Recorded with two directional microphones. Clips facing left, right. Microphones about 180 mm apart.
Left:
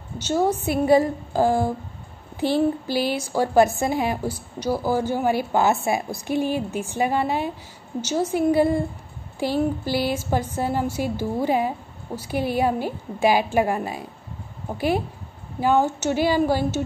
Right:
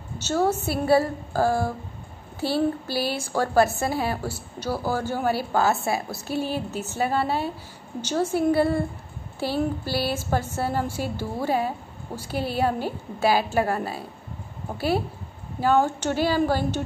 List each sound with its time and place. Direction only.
0.3 s a woman's voice: 15° left (ahead or behind)